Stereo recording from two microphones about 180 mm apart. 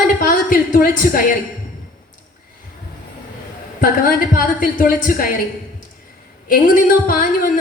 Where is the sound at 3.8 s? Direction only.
50° left (ahead or behind).